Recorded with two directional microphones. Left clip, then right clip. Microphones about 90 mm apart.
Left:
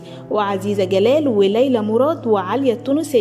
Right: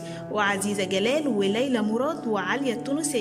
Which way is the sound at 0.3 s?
40° left (ahead or behind).